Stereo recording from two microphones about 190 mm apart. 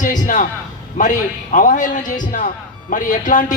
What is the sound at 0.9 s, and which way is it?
A man's voice, 45° left (ahead or behind).